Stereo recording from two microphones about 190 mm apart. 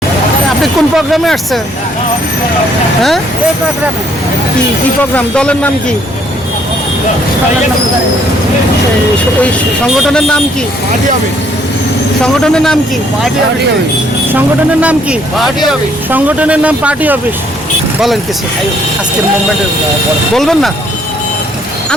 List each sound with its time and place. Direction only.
0.6 s speech: centre (ahead or behind)
5.1 s speech: 5° left (ahead or behind)
9.4 s speech: centre (ahead or behind)
12.2 s speech: 5° left (ahead or behind)
14.3 s speech: 5° right (ahead or behind)
20.3 s speech: centre (ahead or behind)